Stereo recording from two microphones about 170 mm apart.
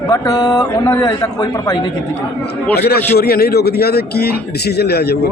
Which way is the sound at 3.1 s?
70° left (ahead or behind).